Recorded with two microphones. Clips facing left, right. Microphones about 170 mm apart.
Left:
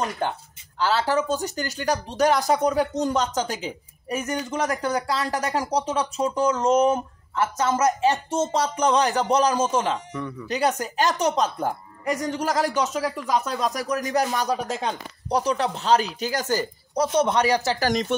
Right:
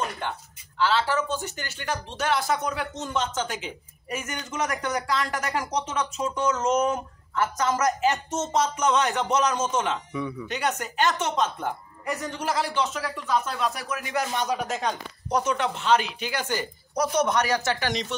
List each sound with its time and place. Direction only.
0.2 s speech: 40° left (ahead or behind)
16.9 s speech: 30° left (ahead or behind); by 18.1 s 45° left (ahead or behind)